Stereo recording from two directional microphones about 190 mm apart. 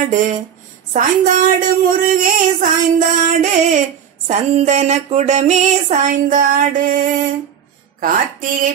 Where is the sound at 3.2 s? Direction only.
40° right (ahead or behind).